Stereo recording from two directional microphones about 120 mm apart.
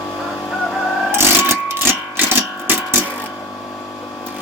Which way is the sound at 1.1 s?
20° right (ahead or behind).